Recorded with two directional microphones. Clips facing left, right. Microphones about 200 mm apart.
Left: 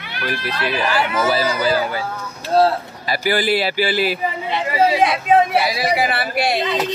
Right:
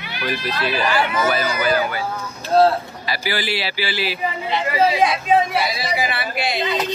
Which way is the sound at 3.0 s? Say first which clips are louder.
Left 7 dB; 50° left (ahead or behind).